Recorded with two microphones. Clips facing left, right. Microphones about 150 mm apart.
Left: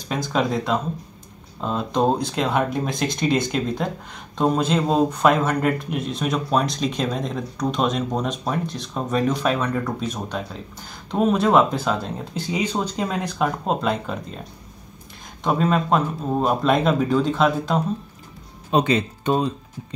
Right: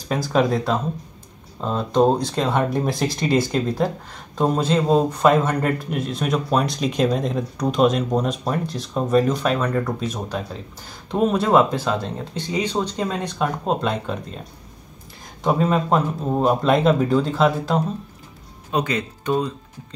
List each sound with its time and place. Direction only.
0.1 s speech: 5° right (ahead or behind)
15.4 s speech: 5° right (ahead or behind)
18.7 s speech: 25° left (ahead or behind)